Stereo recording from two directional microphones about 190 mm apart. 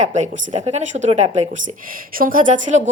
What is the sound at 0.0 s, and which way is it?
Speech, 40° right (ahead or behind).